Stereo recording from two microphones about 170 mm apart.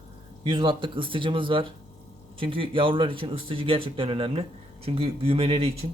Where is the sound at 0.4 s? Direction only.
30° right (ahead or behind).